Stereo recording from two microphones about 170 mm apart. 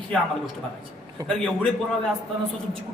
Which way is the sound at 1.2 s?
20° right (ahead or behind).